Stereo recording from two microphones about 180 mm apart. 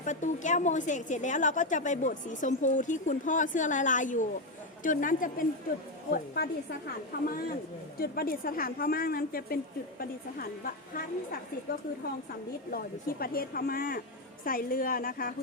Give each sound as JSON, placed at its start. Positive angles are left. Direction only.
{"t": 0.0, "sound": "a woman's voice", "side_deg": 45}
{"t": 12.7, "sound": "a woman's voice", "side_deg": 55}